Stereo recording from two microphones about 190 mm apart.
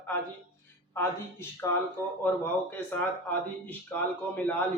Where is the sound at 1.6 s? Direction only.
15° left (ahead or behind).